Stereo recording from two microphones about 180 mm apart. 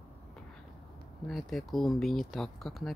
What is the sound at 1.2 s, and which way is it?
Speech, centre (ahead or behind).